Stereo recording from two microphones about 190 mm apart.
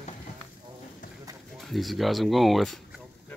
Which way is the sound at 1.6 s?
Centre (ahead or behind).